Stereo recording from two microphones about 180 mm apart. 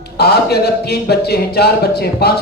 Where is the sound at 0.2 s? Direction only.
65° left (ahead or behind).